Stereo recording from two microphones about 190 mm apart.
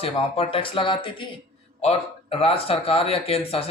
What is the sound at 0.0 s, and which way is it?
Speech, 30° left (ahead or behind).